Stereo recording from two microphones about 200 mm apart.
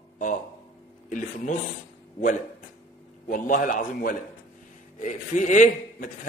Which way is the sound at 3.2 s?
40° left (ahead or behind).